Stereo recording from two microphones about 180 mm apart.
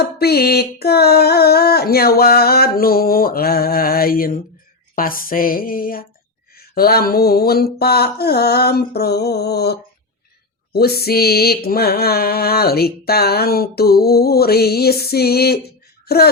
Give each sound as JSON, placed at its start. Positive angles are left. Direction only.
{"t": 0.0, "sound": "mantra", "side_deg": 60}
{"t": 4.9, "sound": "a sound", "side_deg": 50}
{"t": 6.6, "sound": "mantra", "side_deg": 60}
{"t": 16.0, "sound": "speech", "side_deg": 60}